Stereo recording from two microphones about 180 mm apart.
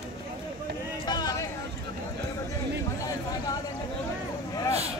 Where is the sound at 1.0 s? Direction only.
20° left (ahead or behind).